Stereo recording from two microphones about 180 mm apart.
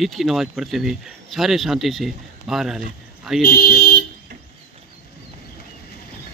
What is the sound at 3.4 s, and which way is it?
Speech, 55° left (ahead or behind).